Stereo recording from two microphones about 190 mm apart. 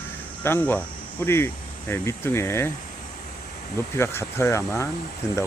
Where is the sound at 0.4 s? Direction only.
10° left (ahead or behind).